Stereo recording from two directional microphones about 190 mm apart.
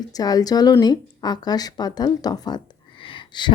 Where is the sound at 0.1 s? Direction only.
20° left (ahead or behind).